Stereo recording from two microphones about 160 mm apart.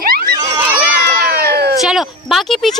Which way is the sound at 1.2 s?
80° right.